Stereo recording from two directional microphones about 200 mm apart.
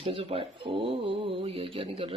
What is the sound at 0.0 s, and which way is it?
Speech, 30° right (ahead or behind).